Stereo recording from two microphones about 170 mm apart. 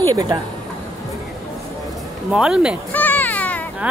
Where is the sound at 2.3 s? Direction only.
5° right (ahead or behind).